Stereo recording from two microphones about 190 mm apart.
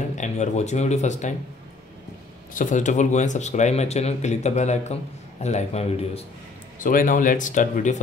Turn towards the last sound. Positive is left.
turn(degrees=40)  # may be behind; listen again after turning